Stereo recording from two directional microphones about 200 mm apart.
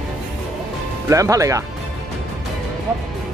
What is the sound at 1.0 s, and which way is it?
Speech, 15° right (ahead or behind).